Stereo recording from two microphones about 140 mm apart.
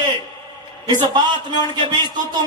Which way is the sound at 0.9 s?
30° right (ahead or behind).